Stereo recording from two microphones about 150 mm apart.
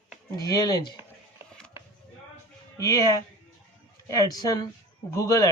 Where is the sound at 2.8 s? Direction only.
25° left (ahead or behind).